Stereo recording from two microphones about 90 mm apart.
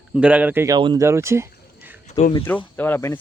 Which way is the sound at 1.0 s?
30° right (ahead or behind).